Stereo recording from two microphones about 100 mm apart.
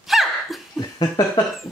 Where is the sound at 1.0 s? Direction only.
40° left (ahead or behind).